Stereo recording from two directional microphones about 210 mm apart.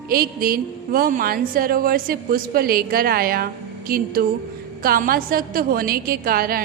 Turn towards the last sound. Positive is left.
turn(degrees=-45)  # may be behind; listen again after turning